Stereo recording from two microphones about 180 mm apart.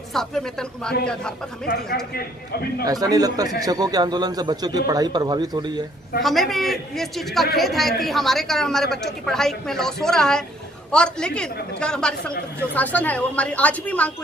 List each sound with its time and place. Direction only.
0.1 s a woman's voice: centre (ahead or behind)
2.8 s a man's voice: 20° right (ahead or behind)
6.2 s a woman's voice: centre (ahead or behind)